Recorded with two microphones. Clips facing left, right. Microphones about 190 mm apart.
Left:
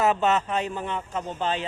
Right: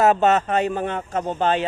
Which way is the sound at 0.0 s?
45° right (ahead or behind).